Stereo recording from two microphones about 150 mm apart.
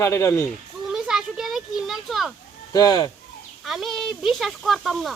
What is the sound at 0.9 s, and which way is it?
Children playing, 5° right (ahead or behind).